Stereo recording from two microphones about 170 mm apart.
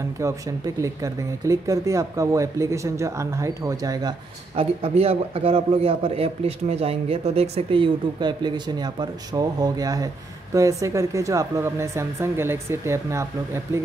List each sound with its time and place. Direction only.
0.2 s speech: 20° right (ahead or behind)
4.6 s a man's voice: 35° right (ahead or behind); by 13.3 s 15° right (ahead or behind)